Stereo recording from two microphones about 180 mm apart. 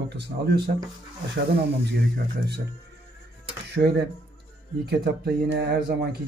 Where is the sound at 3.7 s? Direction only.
65° right (ahead or behind).